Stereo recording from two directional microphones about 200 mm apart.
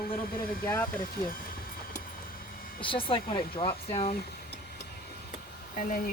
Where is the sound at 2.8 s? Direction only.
25° left (ahead or behind).